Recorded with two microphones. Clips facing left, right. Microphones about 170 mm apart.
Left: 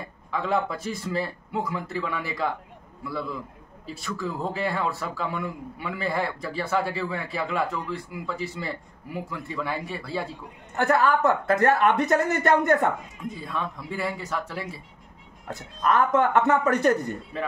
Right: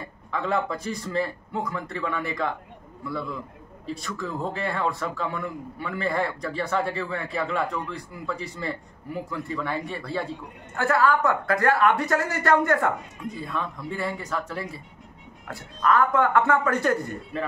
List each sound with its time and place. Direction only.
0.3 s a man's voice: centre (ahead or behind)
10.8 s speech: 20° left (ahead or behind)
13.2 s a man's voice: centre (ahead or behind)
15.5 s speech: 20° left (ahead or behind)